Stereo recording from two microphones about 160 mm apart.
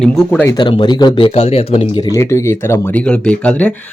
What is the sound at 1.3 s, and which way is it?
Speech, 40° left (ahead or behind).